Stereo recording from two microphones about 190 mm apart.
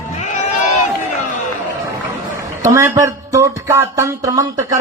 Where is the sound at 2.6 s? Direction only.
15° right (ahead or behind).